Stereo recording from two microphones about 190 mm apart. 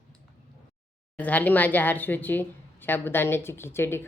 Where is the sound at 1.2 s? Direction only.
10° left (ahead or behind).